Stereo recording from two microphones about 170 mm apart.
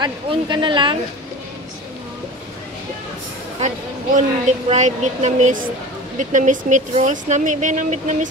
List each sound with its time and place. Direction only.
0.0 s speech: 25° right (ahead or behind)
3.5 s speech: 45° right (ahead or behind)